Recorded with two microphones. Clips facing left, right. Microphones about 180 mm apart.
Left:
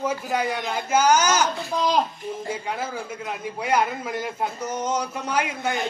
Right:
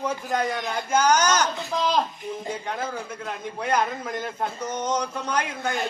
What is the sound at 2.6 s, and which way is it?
A man's voice, 5° left (ahead or behind).